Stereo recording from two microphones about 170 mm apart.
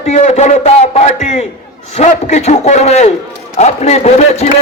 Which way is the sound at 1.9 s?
45° left (ahead or behind).